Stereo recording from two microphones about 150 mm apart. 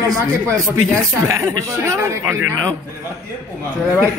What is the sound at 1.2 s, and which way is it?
Speech, 20° right (ahead or behind).